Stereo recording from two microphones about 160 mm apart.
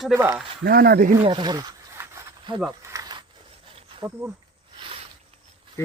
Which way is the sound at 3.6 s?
35° right (ahead or behind).